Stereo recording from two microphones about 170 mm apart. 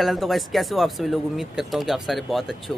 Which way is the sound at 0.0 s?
Centre (ahead or behind).